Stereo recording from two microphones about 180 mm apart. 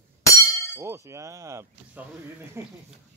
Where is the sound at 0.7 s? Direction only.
15° right (ahead or behind).